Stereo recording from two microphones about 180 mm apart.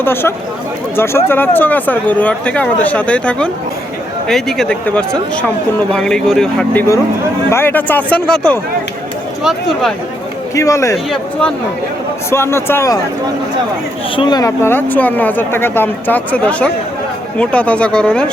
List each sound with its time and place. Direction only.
0.0 s speech: 10° left (ahead or behind)
10.5 s speech: 15° left (ahead or behind)
10.9 s speech: 5° left (ahead or behind)
12.3 s speech: 15° left (ahead or behind)
14.2 s speech: 20° left (ahead or behind); by 18.3 s 5° left (ahead or behind)